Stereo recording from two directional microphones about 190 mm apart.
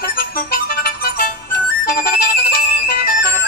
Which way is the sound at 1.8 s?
55° left (ahead or behind).